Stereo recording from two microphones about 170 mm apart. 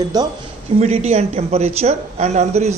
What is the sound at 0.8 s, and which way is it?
Speech, 40° right (ahead or behind).